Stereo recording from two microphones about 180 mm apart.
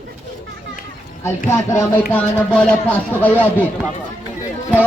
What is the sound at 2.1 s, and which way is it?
Speech, 5° left (ahead or behind).